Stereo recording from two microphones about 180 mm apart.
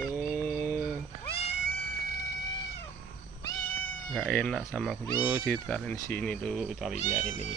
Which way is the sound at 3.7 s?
5° left (ahead or behind).